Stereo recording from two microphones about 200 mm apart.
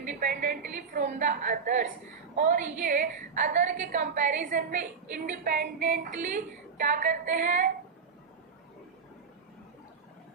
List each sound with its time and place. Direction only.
0.1 s a woman's voice: 45° right (ahead or behind)